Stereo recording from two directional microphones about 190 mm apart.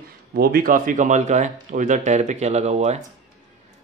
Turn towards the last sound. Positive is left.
turn(degrees=-35)  # may be behind; listen again after turning